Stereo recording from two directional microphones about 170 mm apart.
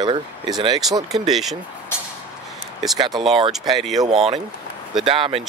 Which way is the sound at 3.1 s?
Centre (ahead or behind).